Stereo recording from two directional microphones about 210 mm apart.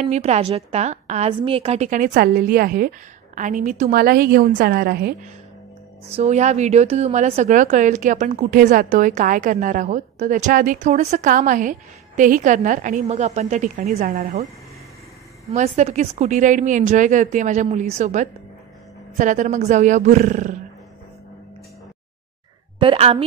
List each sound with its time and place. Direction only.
0.0 s a woman's voice: 30° right (ahead or behind)
6.0 s a woman's voice: 30° right (ahead or behind)
22.8 s a woman's voice: 25° right (ahead or behind)